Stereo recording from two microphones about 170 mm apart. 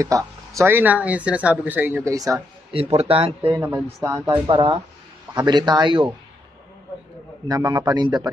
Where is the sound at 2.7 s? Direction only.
35° right (ahead or behind).